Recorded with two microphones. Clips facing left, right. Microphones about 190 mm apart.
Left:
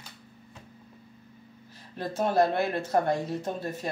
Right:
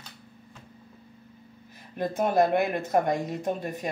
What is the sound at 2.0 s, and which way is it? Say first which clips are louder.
Speech: right 1 dB; 15° right (ahead or behind).